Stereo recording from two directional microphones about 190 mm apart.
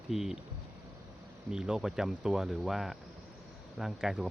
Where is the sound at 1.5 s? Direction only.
5° right (ahead or behind).